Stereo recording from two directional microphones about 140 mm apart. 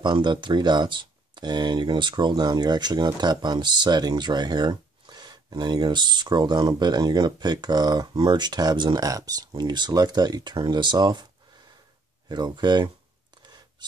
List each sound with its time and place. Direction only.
0.0 s speech: 35° right (ahead or behind)
12.3 s speech: 30° right (ahead or behind)